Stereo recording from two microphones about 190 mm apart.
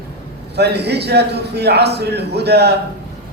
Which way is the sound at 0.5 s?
60° right (ahead or behind).